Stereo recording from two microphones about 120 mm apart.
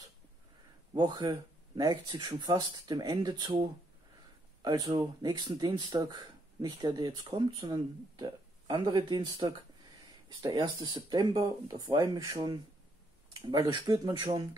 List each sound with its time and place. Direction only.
0.9 s speech: 40° right (ahead or behind)
13.7 s speech: 35° right (ahead or behind)